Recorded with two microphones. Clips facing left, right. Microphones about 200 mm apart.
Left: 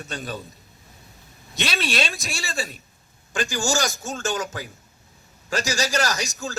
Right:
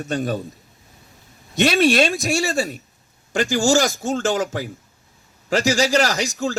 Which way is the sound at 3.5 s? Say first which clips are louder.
Right 8 dB; 90° right.